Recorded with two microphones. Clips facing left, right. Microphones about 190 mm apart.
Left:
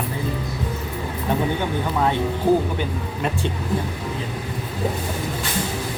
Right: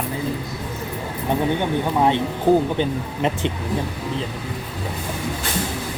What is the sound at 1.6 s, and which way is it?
Speech, 20° right (ahead or behind).